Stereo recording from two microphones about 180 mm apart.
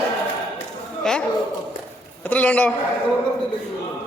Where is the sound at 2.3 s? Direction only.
10° left (ahead or behind).